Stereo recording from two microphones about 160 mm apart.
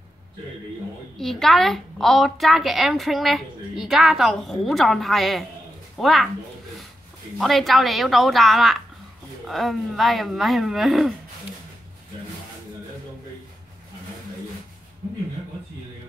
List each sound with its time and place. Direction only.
1.1 s a woman's voice: centre (ahead or behind)
7.3 s a woman's voice: centre (ahead or behind)